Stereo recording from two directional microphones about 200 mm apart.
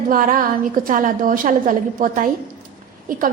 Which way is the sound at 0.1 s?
45° right (ahead or behind).